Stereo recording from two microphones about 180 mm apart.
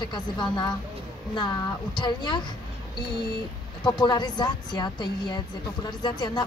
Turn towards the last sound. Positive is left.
turn(degrees=25)  # may be behind; listen again after turning